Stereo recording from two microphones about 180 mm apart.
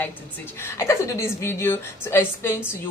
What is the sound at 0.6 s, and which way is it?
Speech, 15° left (ahead or behind).